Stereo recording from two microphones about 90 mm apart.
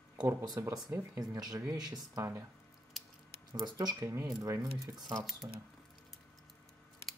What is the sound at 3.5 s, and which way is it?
Speech, 50° right (ahead or behind).